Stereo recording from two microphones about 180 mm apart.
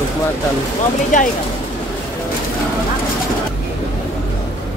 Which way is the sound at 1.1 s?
45° left (ahead or behind).